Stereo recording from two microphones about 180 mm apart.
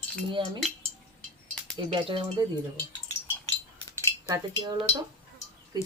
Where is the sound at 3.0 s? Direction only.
15° left (ahead or behind).